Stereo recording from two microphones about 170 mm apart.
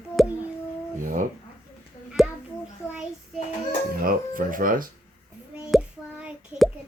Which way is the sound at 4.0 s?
55° right (ahead or behind).